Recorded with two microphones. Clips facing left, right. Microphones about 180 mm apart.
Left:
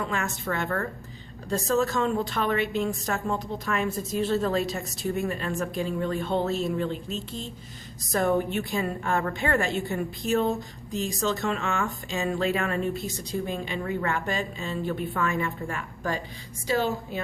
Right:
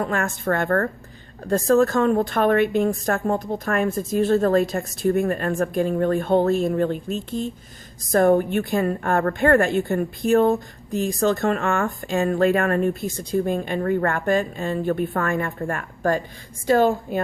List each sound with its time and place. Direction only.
0.0 s a woman's voice: 55° right (ahead or behind)